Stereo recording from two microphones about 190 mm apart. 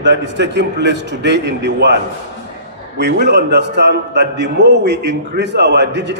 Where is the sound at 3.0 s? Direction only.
60° right (ahead or behind).